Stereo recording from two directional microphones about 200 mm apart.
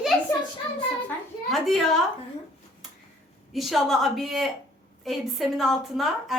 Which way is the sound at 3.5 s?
Centre (ahead or behind).